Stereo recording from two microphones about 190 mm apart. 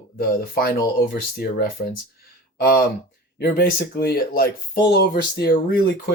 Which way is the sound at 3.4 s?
50° left (ahead or behind).